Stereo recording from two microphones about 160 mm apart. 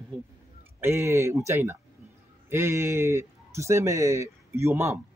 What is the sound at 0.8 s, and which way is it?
Speech, 15° right (ahead or behind).